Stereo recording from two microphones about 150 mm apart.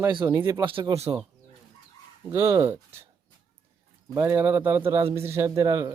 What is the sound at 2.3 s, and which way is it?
Speech, 20° right (ahead or behind).